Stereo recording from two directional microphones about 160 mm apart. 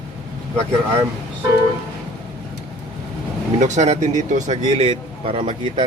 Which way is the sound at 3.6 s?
50° right (ahead or behind).